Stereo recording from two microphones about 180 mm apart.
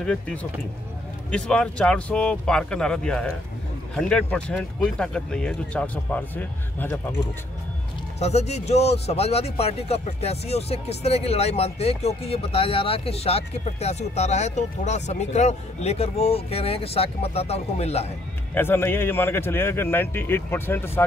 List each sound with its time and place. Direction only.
0.0 s speech: 5° left (ahead or behind)
8.2 s speech: 35° left (ahead or behind)
18.5 s a man's voice: 10° left (ahead or behind)